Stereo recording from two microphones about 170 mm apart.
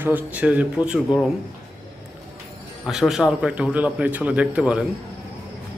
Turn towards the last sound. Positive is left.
turn(degrees=-5)  # may be behind; listen again after turning